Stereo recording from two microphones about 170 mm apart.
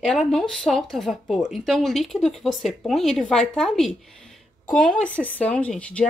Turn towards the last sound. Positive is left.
turn(degrees=5)  # may be behind; listen again after turning